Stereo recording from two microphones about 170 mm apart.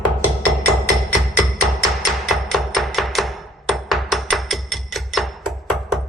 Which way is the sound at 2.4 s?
Centre (ahead or behind).